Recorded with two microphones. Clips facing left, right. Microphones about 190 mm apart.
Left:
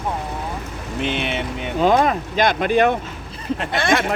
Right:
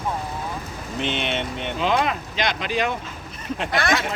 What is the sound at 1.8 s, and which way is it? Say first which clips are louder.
Speech: left 6 dB; 45° left (ahead or behind).